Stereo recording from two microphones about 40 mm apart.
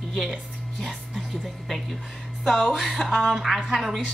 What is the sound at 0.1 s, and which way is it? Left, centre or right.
Music, centre.